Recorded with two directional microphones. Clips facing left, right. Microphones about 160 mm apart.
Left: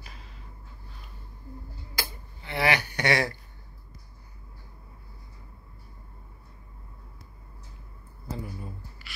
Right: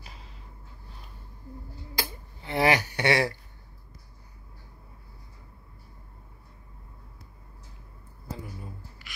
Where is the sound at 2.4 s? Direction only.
35° right (ahead or behind).